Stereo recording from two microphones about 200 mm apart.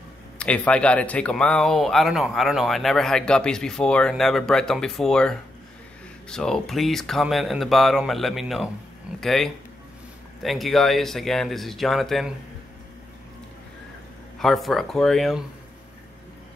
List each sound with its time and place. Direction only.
0.4 s speech: 5° left (ahead or behind)
14.4 s speech: centre (ahead or behind)